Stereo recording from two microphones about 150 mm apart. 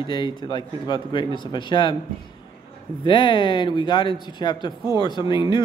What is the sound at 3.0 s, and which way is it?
A man's voice, 35° left (ahead or behind).